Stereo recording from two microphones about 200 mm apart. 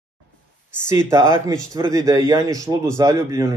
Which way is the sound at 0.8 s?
15° right (ahead or behind).